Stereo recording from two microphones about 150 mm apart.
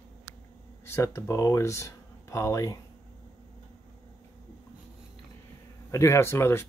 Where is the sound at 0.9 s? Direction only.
15° left (ahead or behind).